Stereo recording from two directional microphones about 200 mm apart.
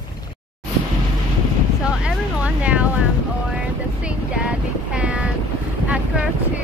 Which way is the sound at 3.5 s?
5° right (ahead or behind).